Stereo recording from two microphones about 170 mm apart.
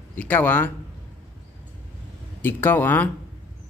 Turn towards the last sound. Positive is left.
turn(degrees=10)  # may be behind; listen again after turning